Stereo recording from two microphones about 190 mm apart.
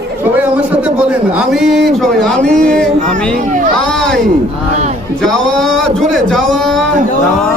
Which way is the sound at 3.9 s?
5° left (ahead or behind).